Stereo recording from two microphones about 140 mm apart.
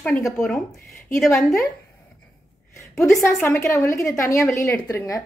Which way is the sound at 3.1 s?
20° left (ahead or behind).